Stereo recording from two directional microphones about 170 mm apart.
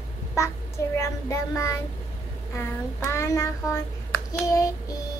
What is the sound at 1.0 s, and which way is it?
Child singing, 15° left (ahead or behind).